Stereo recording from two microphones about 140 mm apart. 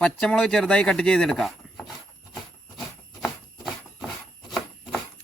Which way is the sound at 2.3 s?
Centre (ahead or behind).